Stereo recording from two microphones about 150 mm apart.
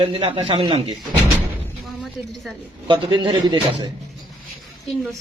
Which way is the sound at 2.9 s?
30° right (ahead or behind).